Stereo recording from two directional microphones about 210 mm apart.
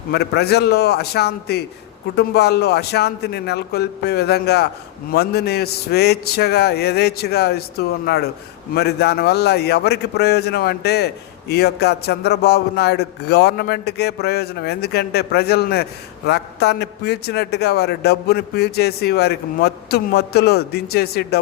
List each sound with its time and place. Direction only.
0.1 s a man's voice: 50° left (ahead or behind)